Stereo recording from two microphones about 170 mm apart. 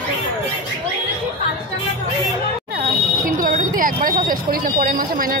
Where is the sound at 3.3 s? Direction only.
50° right (ahead or behind).